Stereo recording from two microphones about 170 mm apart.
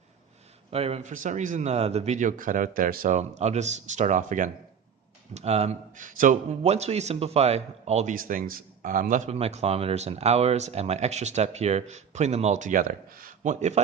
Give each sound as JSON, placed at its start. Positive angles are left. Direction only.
{"t": 0.7, "sound": "a man's voice", "side_deg": -35}
{"t": 5.3, "sound": "speech", "side_deg": -40}